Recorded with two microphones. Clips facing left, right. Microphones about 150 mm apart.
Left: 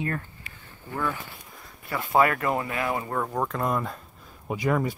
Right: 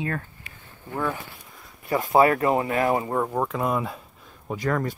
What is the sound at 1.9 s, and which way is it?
Speech, 35° right (ahead or behind).